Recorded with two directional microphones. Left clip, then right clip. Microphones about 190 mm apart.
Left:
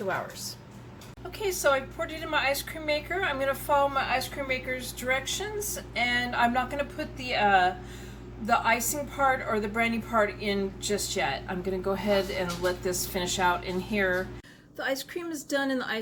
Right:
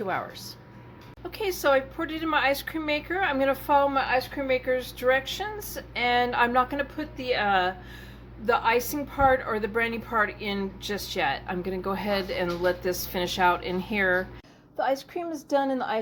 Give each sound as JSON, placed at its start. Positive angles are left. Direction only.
{"t": 1.4, "sound": "a woman's voice", "side_deg": -45}
{"t": 14.8, "sound": "a woman's voice", "side_deg": 5}